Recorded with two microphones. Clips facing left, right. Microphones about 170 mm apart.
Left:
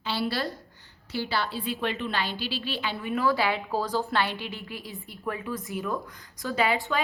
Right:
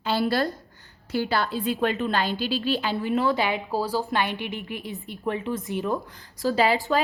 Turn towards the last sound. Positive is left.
turn(degrees=-40)  # may be behind; listen again after turning